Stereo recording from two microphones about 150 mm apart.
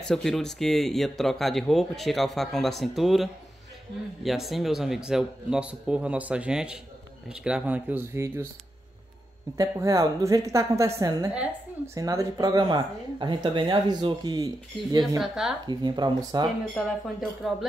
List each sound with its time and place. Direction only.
0.1 s speech: 5° left (ahead or behind); by 8.5 s 15° right (ahead or behind)
9.6 s speech: 25° right (ahead or behind)
15.1 s speech: 5° right (ahead or behind)
15.6 s speech: 30° right (ahead or behind)
16.7 s speech: centre (ahead or behind)